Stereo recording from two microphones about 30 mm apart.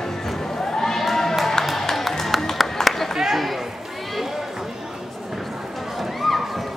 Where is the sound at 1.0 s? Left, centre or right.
Centre.